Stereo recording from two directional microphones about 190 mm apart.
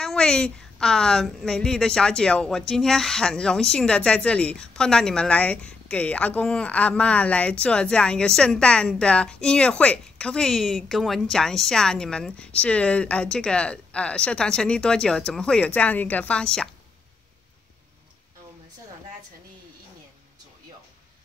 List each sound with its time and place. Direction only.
0.0 s a woman's voice: 5° left (ahead or behind)